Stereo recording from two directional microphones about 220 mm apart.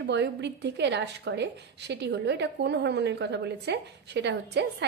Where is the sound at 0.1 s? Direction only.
50° right (ahead or behind).